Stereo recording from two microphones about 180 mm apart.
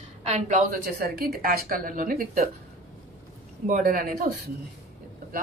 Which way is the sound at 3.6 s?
50° right (ahead or behind).